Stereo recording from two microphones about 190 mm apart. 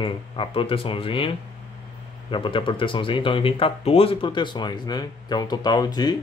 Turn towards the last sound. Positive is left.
turn(degrees=20)  # may be behind; listen again after turning